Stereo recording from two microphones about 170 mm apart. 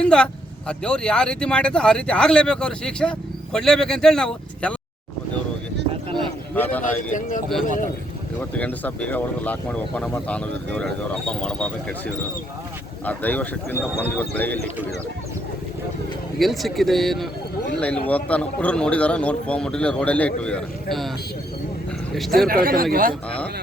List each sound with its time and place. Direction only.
0.0 s speech: 5° left (ahead or behind)
6.1 s a sound: 10° left (ahead or behind)
7.1 s speech: 50° left (ahead or behind)
8.4 s speech: 10° left (ahead or behind)
16.4 s speech: centre (ahead or behind)
22.4 s speech: 55° right (ahead or behind)